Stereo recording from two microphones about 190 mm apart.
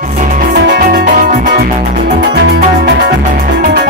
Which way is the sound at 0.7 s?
50° right (ahead or behind).